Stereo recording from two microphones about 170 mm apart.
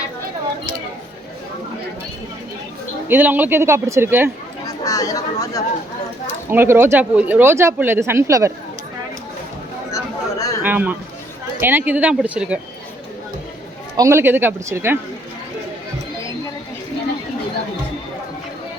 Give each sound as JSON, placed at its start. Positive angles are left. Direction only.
{"t": 3.1, "sound": "speech", "side_deg": -10}
{"t": 4.6, "sound": "speech", "side_deg": 20}
{"t": 6.5, "sound": "speech", "side_deg": -15}
{"t": 9.9, "sound": "a sound", "side_deg": 20}
{"t": 10.6, "sound": "a man's voice", "side_deg": -10}
{"t": 13.9, "sound": "speech", "side_deg": -15}